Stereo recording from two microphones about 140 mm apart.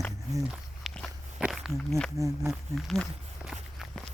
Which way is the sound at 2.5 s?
Centre (ahead or behind).